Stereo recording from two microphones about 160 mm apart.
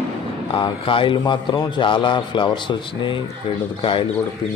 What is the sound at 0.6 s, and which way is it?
A man's voice, 30° left (ahead or behind).